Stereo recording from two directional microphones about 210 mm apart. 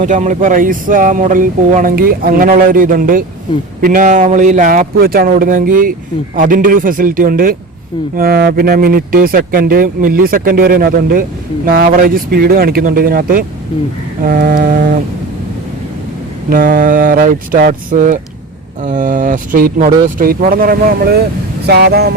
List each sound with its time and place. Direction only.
0.0 s speech: 35° right (ahead or behind)
16.5 s speech: 40° right (ahead or behind)